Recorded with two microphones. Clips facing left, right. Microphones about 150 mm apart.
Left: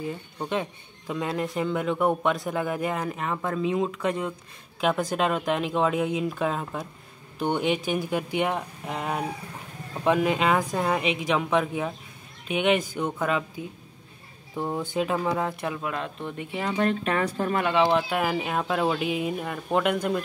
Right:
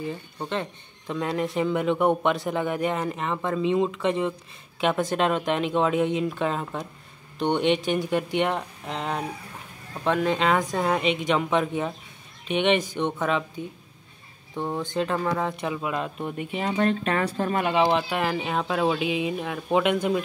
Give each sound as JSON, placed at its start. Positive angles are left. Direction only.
{"t": 0.4, "sound": "a man's voice", "side_deg": 5}
{"t": 17.7, "sound": "a man's voice", "side_deg": 0}